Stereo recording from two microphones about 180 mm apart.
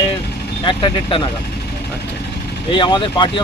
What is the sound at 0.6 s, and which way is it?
Speech, 30° left (ahead or behind).